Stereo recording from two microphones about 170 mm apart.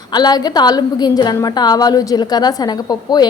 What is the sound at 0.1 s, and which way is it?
A woman's voice, 25° left (ahead or behind).